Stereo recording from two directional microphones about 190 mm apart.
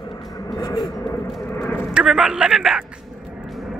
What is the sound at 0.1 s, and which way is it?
Vehicle, 20° left (ahead or behind).